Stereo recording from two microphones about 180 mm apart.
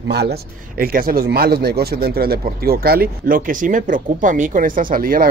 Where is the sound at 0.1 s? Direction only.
65° right (ahead or behind).